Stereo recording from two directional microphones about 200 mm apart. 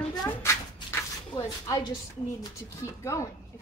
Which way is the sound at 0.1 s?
15° left (ahead or behind).